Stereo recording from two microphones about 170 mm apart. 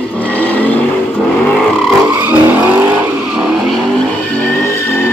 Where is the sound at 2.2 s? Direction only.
10° right (ahead or behind).